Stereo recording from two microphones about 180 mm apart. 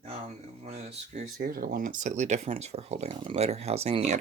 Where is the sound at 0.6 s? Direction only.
35° right (ahead or behind).